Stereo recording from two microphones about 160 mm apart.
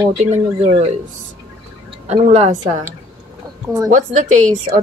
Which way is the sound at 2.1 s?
45° right (ahead or behind).